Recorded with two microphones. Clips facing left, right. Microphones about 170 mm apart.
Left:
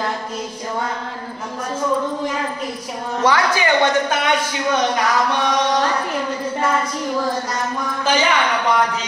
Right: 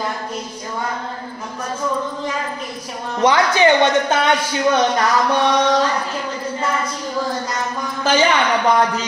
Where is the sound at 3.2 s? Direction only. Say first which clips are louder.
Right 4 dB; 20° right (ahead or behind).